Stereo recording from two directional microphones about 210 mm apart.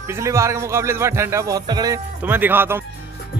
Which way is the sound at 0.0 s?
15° right (ahead or behind).